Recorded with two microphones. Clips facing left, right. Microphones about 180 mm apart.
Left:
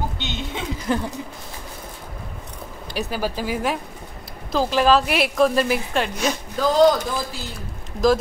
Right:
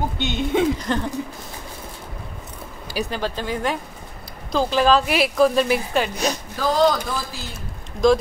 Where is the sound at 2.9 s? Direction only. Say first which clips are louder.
Even; 5° left (ahead or behind).